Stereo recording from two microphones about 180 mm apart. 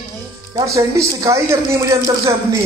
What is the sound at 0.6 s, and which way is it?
Speech, 15° right (ahead or behind).